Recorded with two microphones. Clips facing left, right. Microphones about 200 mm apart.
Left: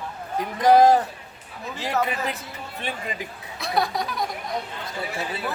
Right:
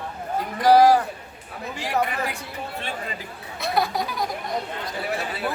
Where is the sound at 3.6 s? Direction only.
Centre (ahead or behind).